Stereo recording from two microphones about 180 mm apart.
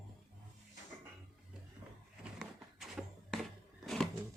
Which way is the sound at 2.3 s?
Centre (ahead or behind).